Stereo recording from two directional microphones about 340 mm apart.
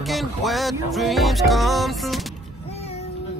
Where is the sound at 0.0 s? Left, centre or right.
Centre.